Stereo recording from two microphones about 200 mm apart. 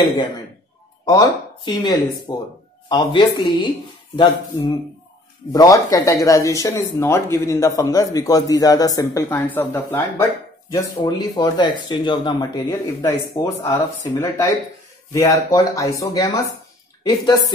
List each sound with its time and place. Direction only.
1.0 s speech: 15° left (ahead or behind)